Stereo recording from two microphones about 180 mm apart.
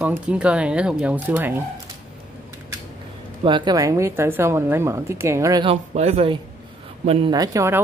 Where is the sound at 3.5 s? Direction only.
25° right (ahead or behind).